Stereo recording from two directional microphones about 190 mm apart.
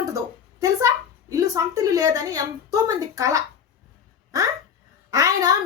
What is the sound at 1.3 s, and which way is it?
A woman's voice, 20° right (ahead or behind).